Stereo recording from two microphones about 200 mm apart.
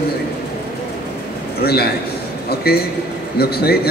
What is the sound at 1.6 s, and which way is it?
A man's voice, 50° left (ahead or behind).